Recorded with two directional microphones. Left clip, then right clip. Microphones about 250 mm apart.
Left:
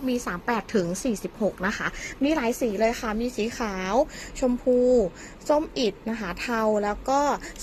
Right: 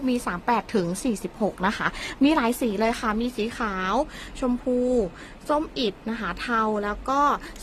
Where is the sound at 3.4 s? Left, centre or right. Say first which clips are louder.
Right 1 dB; centre.